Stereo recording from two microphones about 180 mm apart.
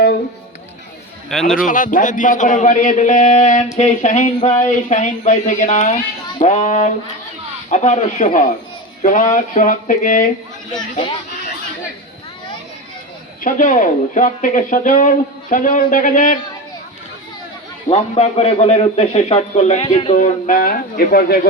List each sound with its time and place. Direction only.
1.3 s a man's voice: centre (ahead or behind)
1.5 s a man's voice: 50° left (ahead or behind)
13.4 s speech: 45° left (ahead or behind)
17.8 s a man's voice: 35° left (ahead or behind); by 21.4 s 55° left (ahead or behind)